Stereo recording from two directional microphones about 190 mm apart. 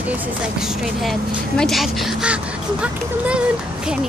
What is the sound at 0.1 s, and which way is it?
Speech, 5° right (ahead or behind).